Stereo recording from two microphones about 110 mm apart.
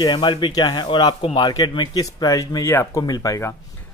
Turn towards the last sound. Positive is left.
turn(degrees=30)  # may be behind; listen again after turning